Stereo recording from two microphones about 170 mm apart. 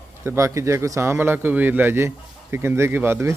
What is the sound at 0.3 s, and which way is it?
Speech, 20° right (ahead or behind).